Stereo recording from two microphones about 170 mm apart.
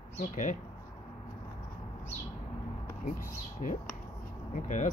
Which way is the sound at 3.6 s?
50° left (ahead or behind).